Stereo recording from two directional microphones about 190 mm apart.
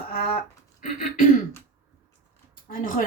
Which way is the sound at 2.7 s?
45° left (ahead or behind).